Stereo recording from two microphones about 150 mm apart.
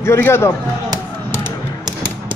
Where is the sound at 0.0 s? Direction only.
15° left (ahead or behind).